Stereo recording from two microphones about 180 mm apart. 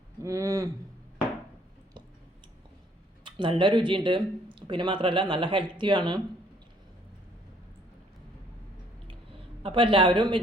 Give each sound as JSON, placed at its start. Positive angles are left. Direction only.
{"t": 0.2, "sound": "a sound", "side_deg": -15}
{"t": 3.2, "sound": "speech", "side_deg": -30}
{"t": 9.6, "sound": "speech", "side_deg": -30}